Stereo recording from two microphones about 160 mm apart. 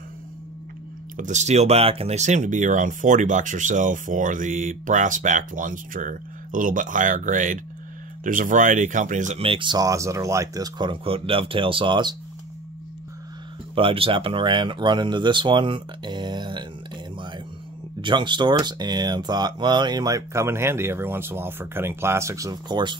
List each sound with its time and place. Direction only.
1.1 s speech: 50° right (ahead or behind); by 12.2 s 30° right (ahead or behind)
13.7 s speech: 35° right (ahead or behind)
18.0 s speech: 30° right (ahead or behind)